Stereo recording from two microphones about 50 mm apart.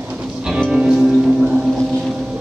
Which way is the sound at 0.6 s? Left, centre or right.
Centre.